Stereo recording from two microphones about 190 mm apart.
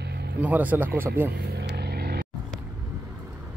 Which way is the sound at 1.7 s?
60° right (ahead or behind).